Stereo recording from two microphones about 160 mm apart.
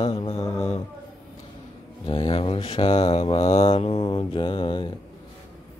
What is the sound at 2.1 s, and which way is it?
Mantra, 35° left (ahead or behind).